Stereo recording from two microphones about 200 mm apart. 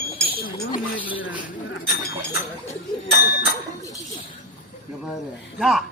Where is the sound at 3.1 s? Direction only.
50° left (ahead or behind).